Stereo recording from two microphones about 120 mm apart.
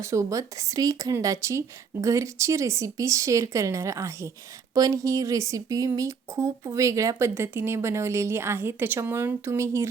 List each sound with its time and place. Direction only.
0.0 s a woman's voice: 25° right (ahead or behind)